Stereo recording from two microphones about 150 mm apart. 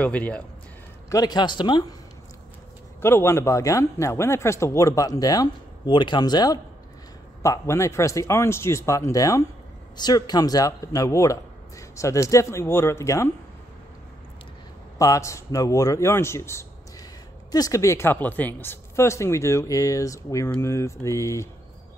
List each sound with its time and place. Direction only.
0.0 s speech: 10° left (ahead or behind)
1.1 s a man's voice: 25° left (ahead or behind)
3.0 s a man's voice: 15° left (ahead or behind)
15.0 s a man's voice: 20° left (ahead or behind)